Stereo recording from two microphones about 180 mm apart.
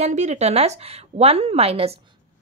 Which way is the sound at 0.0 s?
40° right (ahead or behind).